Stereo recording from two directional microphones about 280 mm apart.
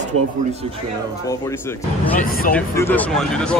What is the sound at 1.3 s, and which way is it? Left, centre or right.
Speech, centre.